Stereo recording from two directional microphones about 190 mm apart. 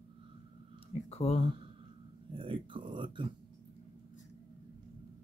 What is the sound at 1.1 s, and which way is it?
Speech, 35° left (ahead or behind).